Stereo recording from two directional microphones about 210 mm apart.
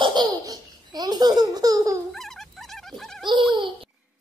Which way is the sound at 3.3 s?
20° right (ahead or behind).